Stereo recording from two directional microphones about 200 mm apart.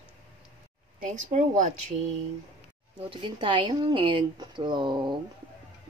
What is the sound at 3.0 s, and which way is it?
Speech, 25° right (ahead or behind).